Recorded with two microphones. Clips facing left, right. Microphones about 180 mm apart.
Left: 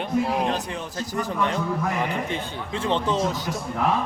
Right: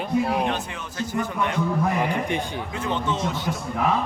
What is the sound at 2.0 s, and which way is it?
Speech, 15° right (ahead or behind).